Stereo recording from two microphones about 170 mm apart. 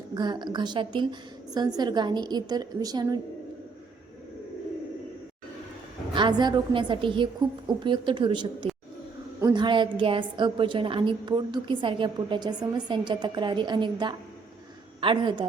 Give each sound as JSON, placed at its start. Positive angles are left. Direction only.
{"t": 0.1, "sound": "a woman's voice", "side_deg": -25}
{"t": 6.1, "sound": "a woman's voice", "side_deg": -30}